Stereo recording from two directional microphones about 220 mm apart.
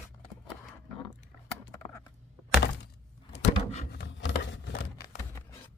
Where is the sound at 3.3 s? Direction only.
30° left (ahead or behind).